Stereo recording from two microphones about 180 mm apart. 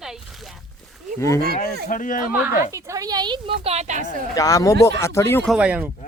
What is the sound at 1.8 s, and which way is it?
Speech, 45° left (ahead or behind).